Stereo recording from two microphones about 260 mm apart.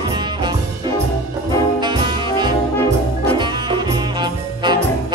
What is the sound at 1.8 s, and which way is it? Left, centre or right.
Brass instrument, centre.